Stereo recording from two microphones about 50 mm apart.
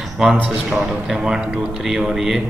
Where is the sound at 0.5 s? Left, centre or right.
Centre.